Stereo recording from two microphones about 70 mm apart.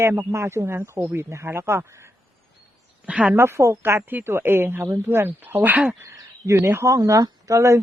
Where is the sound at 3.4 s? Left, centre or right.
Right.